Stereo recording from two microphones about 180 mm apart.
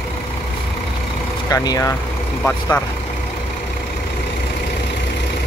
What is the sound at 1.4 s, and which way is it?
Speech, 20° left (ahead or behind).